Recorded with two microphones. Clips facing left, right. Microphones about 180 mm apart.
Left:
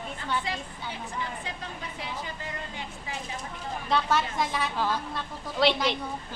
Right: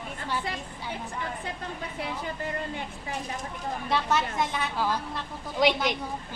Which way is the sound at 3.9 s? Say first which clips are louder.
Left 1 dB; centre (ahead or behind).